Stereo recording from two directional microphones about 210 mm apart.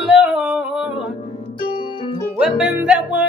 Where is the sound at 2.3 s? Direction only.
5° right (ahead or behind).